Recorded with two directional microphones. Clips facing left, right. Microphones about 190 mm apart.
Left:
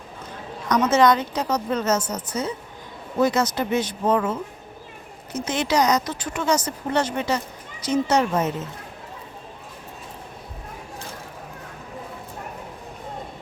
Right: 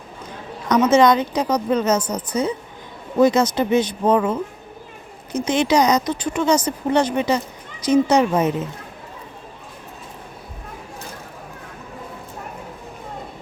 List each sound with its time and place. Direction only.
0.7 s speech: 20° right (ahead or behind)